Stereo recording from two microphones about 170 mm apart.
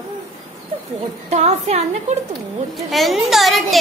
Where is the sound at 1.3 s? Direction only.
40° right (ahead or behind).